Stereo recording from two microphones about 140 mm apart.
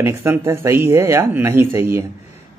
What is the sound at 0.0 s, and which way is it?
Speech, 20° right (ahead or behind).